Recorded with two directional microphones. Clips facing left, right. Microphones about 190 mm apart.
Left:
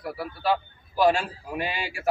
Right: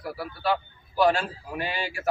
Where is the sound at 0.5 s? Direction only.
5° left (ahead or behind).